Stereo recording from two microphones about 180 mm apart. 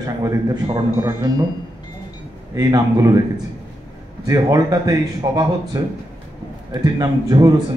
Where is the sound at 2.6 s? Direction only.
20° right (ahead or behind).